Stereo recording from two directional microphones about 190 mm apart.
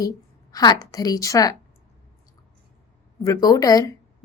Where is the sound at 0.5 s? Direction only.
20° left (ahead or behind).